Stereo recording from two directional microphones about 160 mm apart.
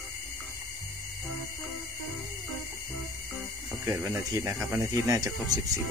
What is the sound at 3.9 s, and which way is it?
Speech, 15° right (ahead or behind).